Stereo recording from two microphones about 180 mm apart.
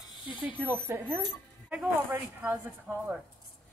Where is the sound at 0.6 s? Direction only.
10° right (ahead or behind).